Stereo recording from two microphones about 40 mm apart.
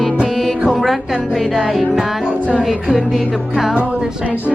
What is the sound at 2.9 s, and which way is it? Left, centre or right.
Music, centre.